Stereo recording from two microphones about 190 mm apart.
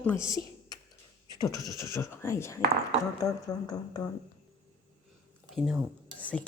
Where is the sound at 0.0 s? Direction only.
15° left (ahead or behind).